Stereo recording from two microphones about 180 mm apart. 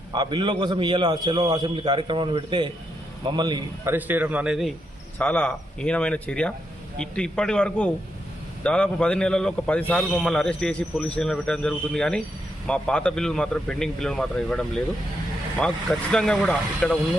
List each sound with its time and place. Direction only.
0.1 s a man's voice: 25° right (ahead or behind)
3.9 s speech: 10° right (ahead or behind)
5.2 s a man's voice: 10° left (ahead or behind)